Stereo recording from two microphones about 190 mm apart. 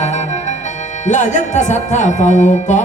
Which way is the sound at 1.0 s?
40° left (ahead or behind).